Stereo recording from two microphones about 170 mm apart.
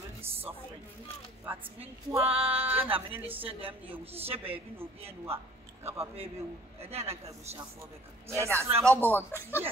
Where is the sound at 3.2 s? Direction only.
35° right (ahead or behind).